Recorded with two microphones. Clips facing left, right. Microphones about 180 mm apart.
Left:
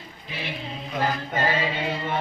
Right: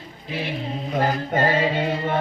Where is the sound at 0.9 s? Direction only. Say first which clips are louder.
Right 4 dB; 50° right (ahead or behind).